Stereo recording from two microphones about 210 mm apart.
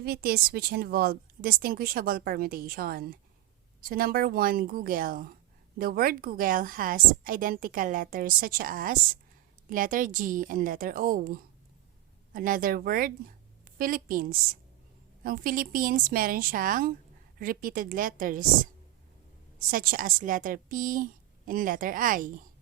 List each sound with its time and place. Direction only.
0.0 s a woman's voice: 45° right (ahead or behind)